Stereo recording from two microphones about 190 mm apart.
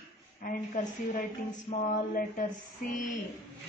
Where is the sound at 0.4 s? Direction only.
45° left (ahead or behind).